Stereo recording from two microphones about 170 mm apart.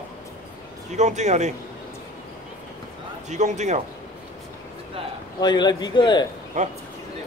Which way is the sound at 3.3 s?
45° right (ahead or behind).